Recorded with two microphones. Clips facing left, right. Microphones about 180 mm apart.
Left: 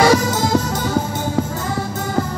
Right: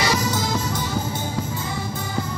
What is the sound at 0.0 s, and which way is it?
Music, 50° left (ahead or behind).